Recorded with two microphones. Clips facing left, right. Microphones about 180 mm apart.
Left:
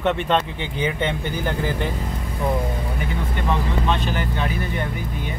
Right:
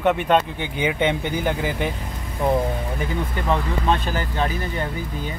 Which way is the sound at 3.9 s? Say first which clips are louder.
Right 4 dB; 40° right (ahead or behind).